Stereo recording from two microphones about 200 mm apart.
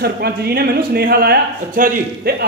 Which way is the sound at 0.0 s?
50° right (ahead or behind).